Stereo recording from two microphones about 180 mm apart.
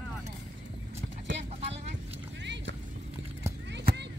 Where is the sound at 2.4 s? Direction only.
80° right.